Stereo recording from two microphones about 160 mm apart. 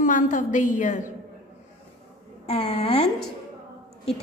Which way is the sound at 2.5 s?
40° left (ahead or behind).